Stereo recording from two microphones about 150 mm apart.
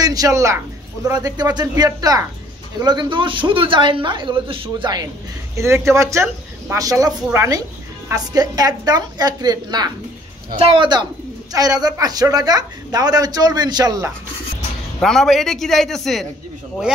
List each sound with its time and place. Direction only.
0.0 s speech: 25° right (ahead or behind)
5.6 s speech: 20° right (ahead or behind)
15.0 s a man's voice: 5° left (ahead or behind)